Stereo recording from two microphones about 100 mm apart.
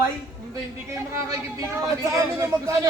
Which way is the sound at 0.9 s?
30° right (ahead or behind).